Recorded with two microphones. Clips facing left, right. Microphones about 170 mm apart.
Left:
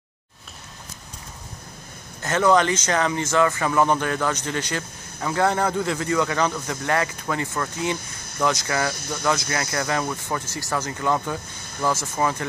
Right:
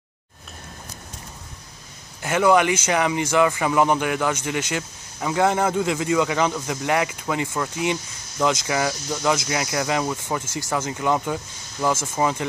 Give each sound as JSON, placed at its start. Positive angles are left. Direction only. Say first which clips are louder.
{"t": 2.2, "sound": "a man's voice", "louder": "right 1 dB", "side_deg": -10}